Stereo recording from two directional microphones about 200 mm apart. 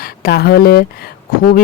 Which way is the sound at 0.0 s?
50° left (ahead or behind).